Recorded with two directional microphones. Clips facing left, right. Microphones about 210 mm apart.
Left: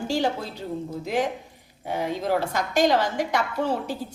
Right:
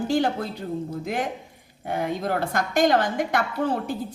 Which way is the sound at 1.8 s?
55° right (ahead or behind).